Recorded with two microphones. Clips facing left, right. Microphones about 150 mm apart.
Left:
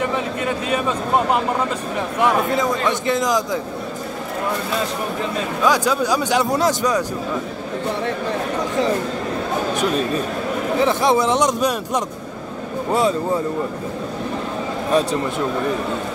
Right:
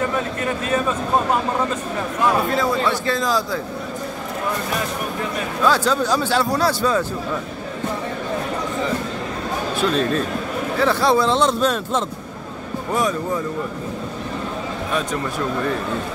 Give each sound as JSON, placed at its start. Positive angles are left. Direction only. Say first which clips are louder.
{"t": 0.4, "sound": "speech", "louder": "right 1 dB", "side_deg": 15}
{"t": 2.5, "sound": "a man's voice", "louder": "even", "side_deg": 20}
{"t": 5.7, "sound": "speech", "louder": "even", "side_deg": 10}
{"t": 9.8, "sound": "speech", "louder": "right 4 dB", "side_deg": 10}
{"t": 14.9, "sound": "speech", "louder": "left 6 dB", "side_deg": 35}